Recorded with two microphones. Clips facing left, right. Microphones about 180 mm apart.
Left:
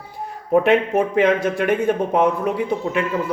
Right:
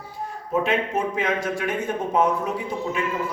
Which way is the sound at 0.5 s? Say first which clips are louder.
Left 7 dB; 65° left (ahead or behind).